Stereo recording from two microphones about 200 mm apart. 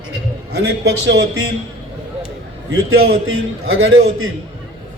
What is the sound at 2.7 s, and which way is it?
A man's voice, 90° right.